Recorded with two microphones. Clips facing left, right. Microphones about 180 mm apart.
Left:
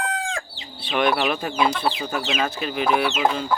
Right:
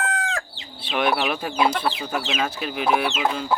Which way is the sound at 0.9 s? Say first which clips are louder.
Left 1 dB; 5° right (ahead or behind).